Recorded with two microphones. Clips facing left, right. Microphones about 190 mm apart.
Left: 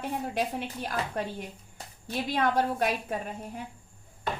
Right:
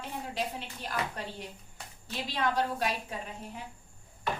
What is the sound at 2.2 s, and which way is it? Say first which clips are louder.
A woman's voice: left 4 dB; 55° left (ahead or behind).